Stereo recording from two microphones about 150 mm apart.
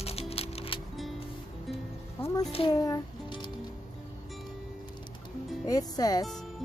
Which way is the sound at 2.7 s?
25° left (ahead or behind).